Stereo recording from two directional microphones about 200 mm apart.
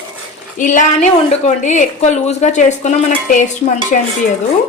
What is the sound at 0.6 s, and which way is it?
Speech, 40° left (ahead or behind).